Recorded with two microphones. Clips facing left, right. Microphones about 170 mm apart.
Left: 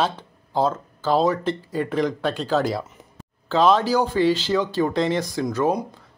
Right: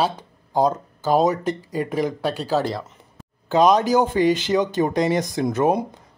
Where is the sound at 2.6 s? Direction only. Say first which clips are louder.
Left 2 dB; 5° left (ahead or behind).